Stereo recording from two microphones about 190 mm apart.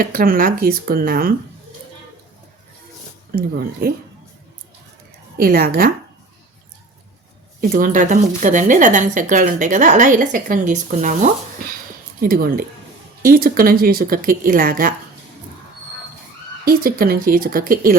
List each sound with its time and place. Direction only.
0.0 s speech: 50° right (ahead or behind)
3.3 s speech: 50° right (ahead or behind)
5.4 s speech: 55° right (ahead or behind)
7.7 s speech: 45° right (ahead or behind)
16.6 s speech: 50° right (ahead or behind)